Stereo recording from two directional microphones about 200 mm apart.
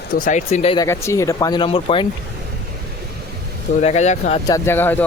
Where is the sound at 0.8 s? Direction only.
15° left (ahead or behind).